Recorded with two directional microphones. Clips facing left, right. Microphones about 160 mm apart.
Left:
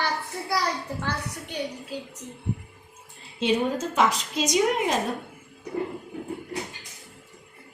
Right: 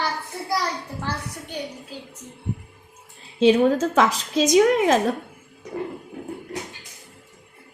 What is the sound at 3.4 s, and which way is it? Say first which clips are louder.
A woman's voice: right 8 dB; 90° right.